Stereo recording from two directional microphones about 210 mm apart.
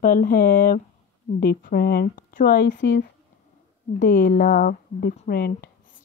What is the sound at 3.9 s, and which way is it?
Speech, 40° left (ahead or behind).